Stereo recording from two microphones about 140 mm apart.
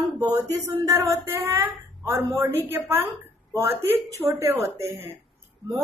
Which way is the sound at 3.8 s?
15° right (ahead or behind).